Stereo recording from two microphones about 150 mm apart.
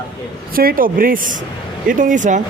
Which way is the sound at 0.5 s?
75° right (ahead or behind).